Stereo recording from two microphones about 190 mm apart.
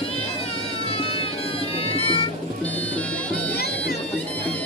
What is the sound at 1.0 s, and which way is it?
Bagpipes, 30° left (ahead or behind).